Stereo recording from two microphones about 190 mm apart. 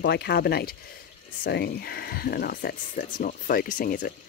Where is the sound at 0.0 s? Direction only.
60° left (ahead or behind).